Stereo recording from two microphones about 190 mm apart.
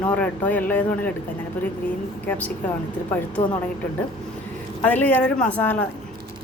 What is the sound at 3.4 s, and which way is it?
Speech, 35° left (ahead or behind).